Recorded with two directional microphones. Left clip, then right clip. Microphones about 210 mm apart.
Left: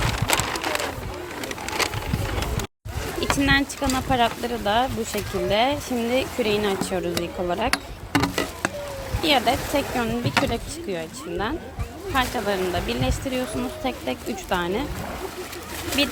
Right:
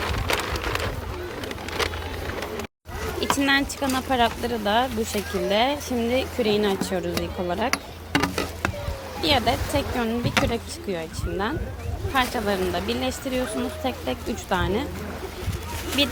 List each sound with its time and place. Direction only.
0.0 s rain: 50° left (ahead or behind)
1.4 s a sound: 55° left (ahead or behind)
3.3 s speech: centre (ahead or behind)
16.0 s speech: centre (ahead or behind)